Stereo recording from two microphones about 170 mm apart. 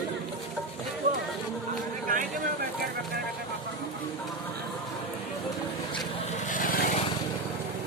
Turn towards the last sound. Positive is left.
turn(degrees=55)  # may be behind; listen again after turning